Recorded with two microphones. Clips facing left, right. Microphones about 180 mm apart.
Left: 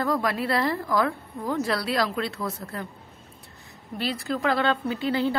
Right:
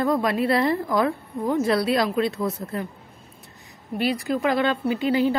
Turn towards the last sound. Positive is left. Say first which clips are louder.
# right 4 dB
turn(degrees=-15)  # may be behind; listen again after turning